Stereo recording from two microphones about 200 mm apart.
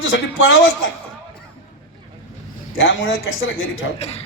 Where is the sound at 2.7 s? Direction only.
70° left (ahead or behind).